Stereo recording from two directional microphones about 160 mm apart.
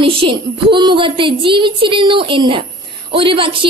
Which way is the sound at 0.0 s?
35° right (ahead or behind).